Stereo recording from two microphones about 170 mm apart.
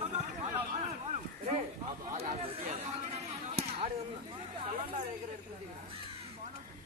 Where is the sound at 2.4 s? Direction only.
40° right (ahead or behind).